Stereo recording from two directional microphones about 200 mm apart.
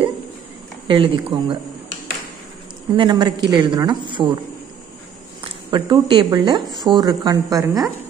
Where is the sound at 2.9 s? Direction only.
20° right (ahead or behind).